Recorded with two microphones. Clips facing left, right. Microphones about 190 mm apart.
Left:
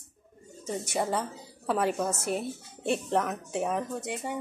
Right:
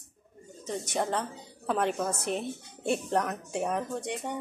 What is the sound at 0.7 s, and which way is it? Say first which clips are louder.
A woman's voice: left 1 dB; 5° left (ahead or behind).